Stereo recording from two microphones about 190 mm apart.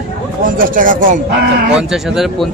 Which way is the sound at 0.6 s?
45° right (ahead or behind).